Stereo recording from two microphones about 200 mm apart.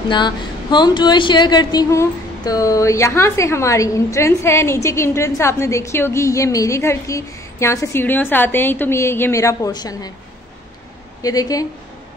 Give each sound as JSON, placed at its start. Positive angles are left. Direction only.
{"t": 0.1, "sound": "a woman's voice", "side_deg": 20}
{"t": 11.2, "sound": "a woman's voice", "side_deg": 20}